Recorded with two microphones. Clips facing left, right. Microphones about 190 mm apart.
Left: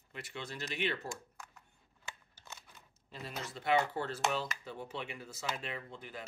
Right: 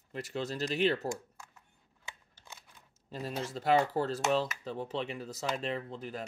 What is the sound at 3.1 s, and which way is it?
Speech, 35° right (ahead or behind).